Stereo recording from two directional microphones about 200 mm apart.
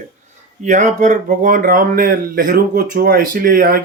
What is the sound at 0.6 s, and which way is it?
Speech, 35° right (ahead or behind).